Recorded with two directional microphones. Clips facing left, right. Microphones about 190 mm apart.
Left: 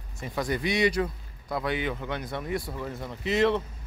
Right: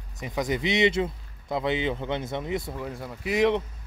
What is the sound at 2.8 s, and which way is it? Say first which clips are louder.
Speech: even; 10° right (ahead or behind).